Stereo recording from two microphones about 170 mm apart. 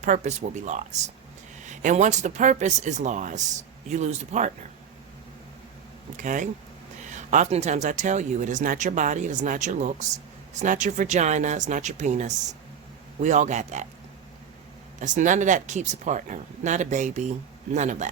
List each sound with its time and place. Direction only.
0.0 s speech: 45° right (ahead or behind)
6.1 s speech: 50° right (ahead or behind)
15.0 s speech: 45° right (ahead or behind)